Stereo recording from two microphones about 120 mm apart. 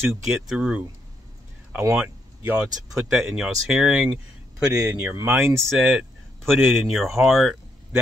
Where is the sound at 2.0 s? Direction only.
15° right (ahead or behind).